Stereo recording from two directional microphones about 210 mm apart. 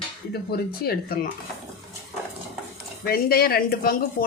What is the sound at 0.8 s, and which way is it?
Speech, 45° left (ahead or behind).